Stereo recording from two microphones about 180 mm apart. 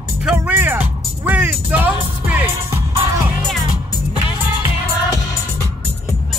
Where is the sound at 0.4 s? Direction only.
15° right (ahead or behind).